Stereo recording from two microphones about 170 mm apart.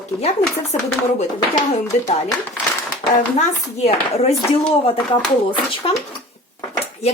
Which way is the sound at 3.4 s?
40° left (ahead or behind).